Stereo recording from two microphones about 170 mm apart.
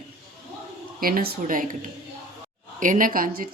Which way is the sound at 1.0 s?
60° right (ahead or behind).